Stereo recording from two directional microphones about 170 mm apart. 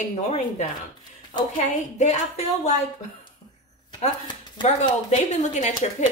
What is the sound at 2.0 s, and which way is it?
Speech, 40° left (ahead or behind).